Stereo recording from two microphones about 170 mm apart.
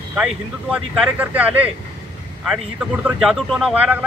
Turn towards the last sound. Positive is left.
turn(degrees=-10)  # may be behind; listen again after turning